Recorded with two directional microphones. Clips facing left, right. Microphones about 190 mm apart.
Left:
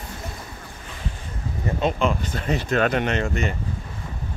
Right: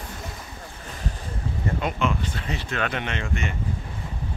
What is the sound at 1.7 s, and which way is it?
Speech, 30° left (ahead or behind).